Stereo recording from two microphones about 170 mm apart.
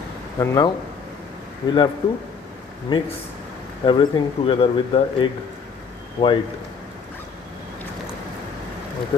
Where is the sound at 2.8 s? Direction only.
30° left (ahead or behind).